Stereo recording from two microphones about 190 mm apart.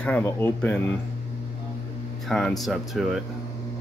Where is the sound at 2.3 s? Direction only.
Centre (ahead or behind).